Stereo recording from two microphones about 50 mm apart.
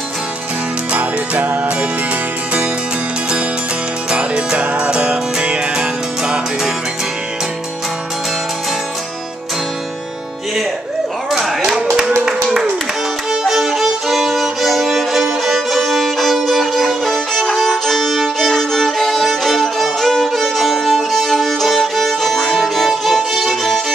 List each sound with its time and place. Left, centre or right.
0.9 s music: right
4.1 s music: centre
11.2 s clapping: centre
13.3 s violin: centre
22.4 s violin: centre
22.8 s music: centre